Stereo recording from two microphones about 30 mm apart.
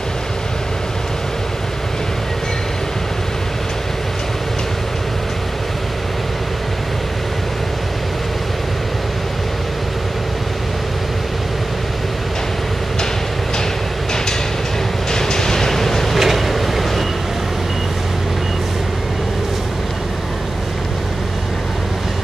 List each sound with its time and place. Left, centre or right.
15.0 s vehicle: centre
16.2 s vehicle: centre